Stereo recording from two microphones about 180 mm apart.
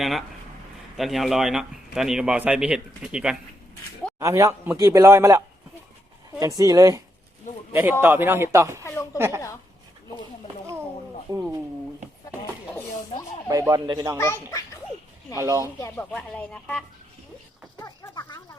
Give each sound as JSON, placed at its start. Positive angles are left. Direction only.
{"t": 0.0, "sound": "a man's voice", "side_deg": 0}
{"t": 4.2, "sound": "speech", "side_deg": -15}
{"t": 6.4, "sound": "speech", "side_deg": -20}
{"t": 8.8, "sound": "speech", "side_deg": 15}
{"t": 9.1, "sound": "speech", "side_deg": -15}
{"t": 11.3, "sound": "a sound", "side_deg": -15}
{"t": 13.5, "sound": "speech", "side_deg": -20}
{"t": 15.4, "sound": "speech", "side_deg": -15}
{"t": 15.8, "sound": "speech", "side_deg": 10}
{"t": 17.7, "sound": "a sound", "side_deg": 15}